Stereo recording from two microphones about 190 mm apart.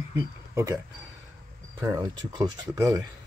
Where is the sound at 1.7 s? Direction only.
15° right (ahead or behind).